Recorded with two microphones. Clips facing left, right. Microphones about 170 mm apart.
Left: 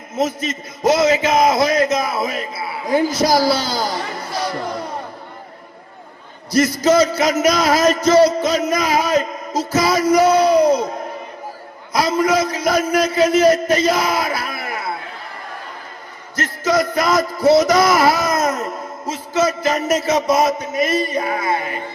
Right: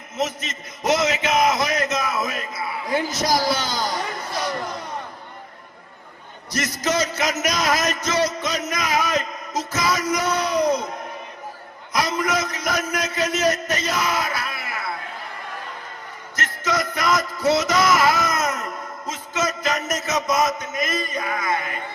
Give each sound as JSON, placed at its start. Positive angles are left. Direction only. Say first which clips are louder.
{"t": 0.9, "sound": "a man's voice", "louder": "left 6 dB", "side_deg": 30}
{"t": 3.1, "sound": "speech", "louder": "left 6 dB", "side_deg": 10}
{"t": 3.3, "sound": "a man's voice", "louder": "left 5 dB", "side_deg": 35}
{"t": 4.5, "sound": "battle cry", "louder": "left 5 dB", "side_deg": 30}
{"t": 6.5, "sound": "a man's voice", "louder": "left 10 dB", "side_deg": 30}
{"t": 11.9, "sound": "a man's voice", "louder": "left 6 dB", "side_deg": 30}
{"t": 16.3, "sound": "a man's voice", "louder": "left 7 dB", "side_deg": 30}